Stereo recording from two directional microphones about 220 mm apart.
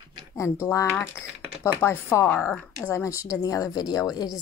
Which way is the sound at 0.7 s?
10° left (ahead or behind).